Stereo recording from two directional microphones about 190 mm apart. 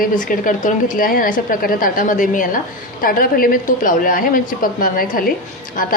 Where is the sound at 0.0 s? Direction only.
45° left (ahead or behind).